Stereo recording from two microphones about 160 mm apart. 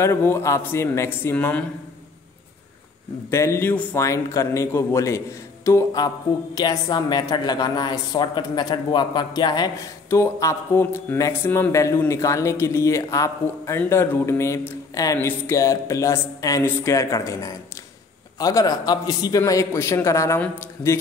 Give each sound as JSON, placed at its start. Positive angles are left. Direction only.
{"t": 0.0, "sound": "a man's voice", "side_deg": 15}
{"t": 3.3, "sound": "a man's voice", "side_deg": 15}